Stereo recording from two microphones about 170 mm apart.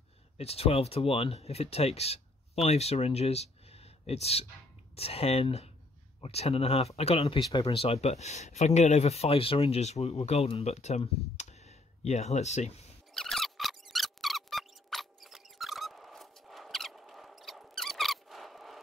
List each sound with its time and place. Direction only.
0.4 s speech: 35° left (ahead or behind)
13.1 s squeak: centre (ahead or behind)